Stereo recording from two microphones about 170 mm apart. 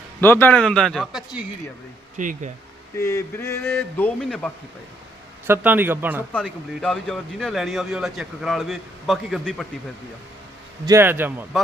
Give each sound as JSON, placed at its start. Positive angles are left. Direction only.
{"t": 0.2, "sound": "speech", "side_deg": 10}
{"t": 2.1, "sound": "speech", "side_deg": -50}
{"t": 3.0, "sound": "speech", "side_deg": 20}
{"t": 5.5, "sound": "speech", "side_deg": -10}
{"t": 6.3, "sound": "speech", "side_deg": 5}
{"t": 10.8, "sound": "speech", "side_deg": -15}